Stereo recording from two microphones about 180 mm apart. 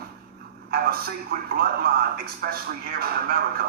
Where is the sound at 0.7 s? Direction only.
55° right (ahead or behind).